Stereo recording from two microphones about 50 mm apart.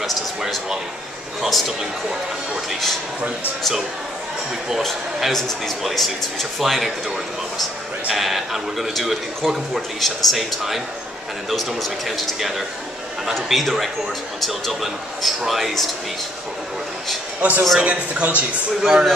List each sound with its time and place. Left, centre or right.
0.0 s speech: centre
4.8 s speech: centre
8.1 s speech: centre
12.4 s speech: centre
17.4 s a man's voice: right
18.8 s speech: centre